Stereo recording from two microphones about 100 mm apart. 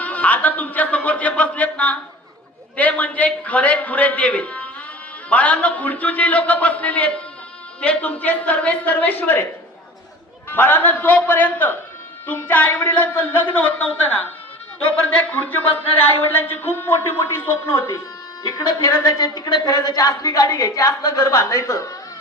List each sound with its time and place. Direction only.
0.0 s a man's voice: 15° left (ahead or behind)
10.5 s speech: 20° left (ahead or behind)
18.4 s a woman's voice: 40° left (ahead or behind)